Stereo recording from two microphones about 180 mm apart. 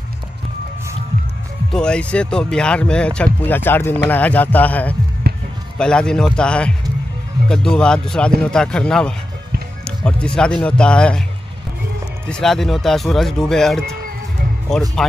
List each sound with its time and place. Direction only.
1.7 s speech: 5° left (ahead or behind)
5.2 s music: 65° right (ahead or behind)
5.8 s speech: 5° left (ahead or behind)
12.3 s speech: 5° left (ahead or behind)
15.0 s speech: centre (ahead or behind)